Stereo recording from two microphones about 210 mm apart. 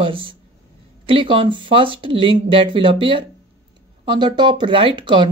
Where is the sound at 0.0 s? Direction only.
25° right (ahead or behind).